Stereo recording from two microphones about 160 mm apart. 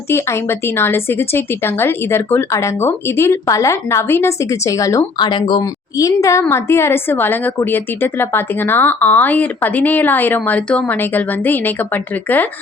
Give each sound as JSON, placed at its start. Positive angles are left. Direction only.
{"t": 0.8, "sound": "a woman's voice", "side_deg": 15}